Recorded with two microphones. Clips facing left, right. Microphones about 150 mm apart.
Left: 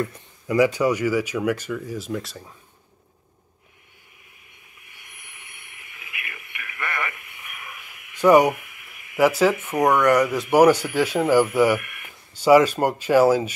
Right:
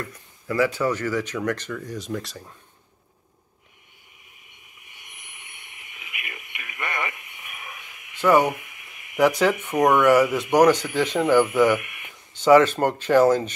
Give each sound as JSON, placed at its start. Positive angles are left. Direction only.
{"t": 0.0, "sound": "speech", "side_deg": 20}
{"t": 4.8, "sound": "a sound", "side_deg": -20}
{"t": 8.2, "sound": "speech", "side_deg": 15}
{"t": 8.5, "sound": "a sound", "side_deg": -20}
{"t": 9.2, "sound": "speech", "side_deg": 5}
{"t": 9.8, "sound": "speech", "side_deg": -20}
{"t": 10.5, "sound": "speech", "side_deg": 10}
{"t": 11.8, "sound": "a sound", "side_deg": -20}
{"t": 12.4, "sound": "speech", "side_deg": 10}